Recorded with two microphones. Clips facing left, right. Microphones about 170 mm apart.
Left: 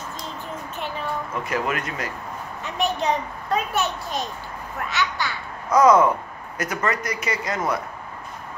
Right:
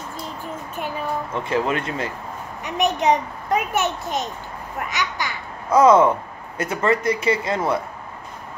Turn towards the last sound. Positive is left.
turn(degrees=-30)  # may be behind; listen again after turning